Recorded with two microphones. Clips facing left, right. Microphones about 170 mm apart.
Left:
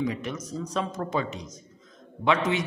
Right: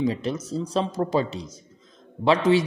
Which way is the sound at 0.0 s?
30° right (ahead or behind).